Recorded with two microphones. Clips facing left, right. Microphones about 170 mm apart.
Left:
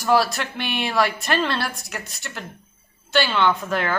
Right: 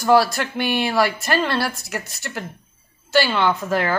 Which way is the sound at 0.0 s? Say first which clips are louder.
Right 3 dB; centre (ahead or behind).